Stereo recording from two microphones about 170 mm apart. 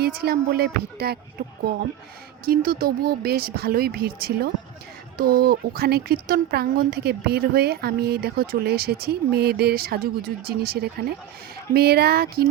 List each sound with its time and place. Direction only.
0.0 s speech: 65° right (ahead or behind)